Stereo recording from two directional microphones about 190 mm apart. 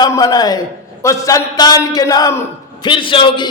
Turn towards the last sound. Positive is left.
turn(degrees=25)  # may be behind; listen again after turning